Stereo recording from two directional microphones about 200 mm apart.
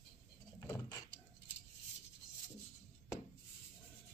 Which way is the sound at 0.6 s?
15° left (ahead or behind).